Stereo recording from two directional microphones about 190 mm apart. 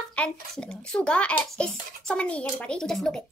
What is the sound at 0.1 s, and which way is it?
A child's voice, 5° left (ahead or behind).